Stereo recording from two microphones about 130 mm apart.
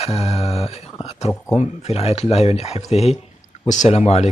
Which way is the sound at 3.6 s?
65° left (ahead or behind).